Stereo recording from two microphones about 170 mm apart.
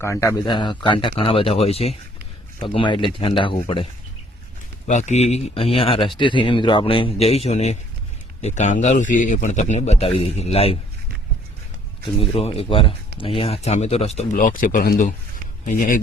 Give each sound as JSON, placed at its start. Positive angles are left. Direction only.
{"t": 0.0, "sound": "a man's voice", "side_deg": 15}
{"t": 0.5, "sound": "speech", "side_deg": 30}
{"t": 4.9, "sound": "speech", "side_deg": 45}
{"t": 12.2, "sound": "speech", "side_deg": 35}
{"t": 14.3, "sound": "speech", "side_deg": 55}